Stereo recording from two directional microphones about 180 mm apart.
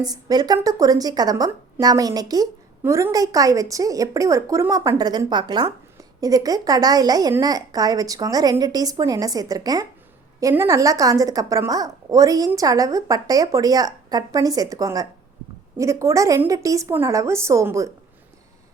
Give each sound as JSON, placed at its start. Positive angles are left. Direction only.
{"t": 0.0, "sound": "a woman's voice", "side_deg": -20}